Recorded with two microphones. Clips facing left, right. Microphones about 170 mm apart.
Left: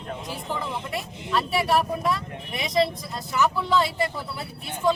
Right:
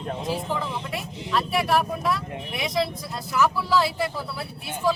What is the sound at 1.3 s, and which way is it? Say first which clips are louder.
Speech: even; centre (ahead or behind).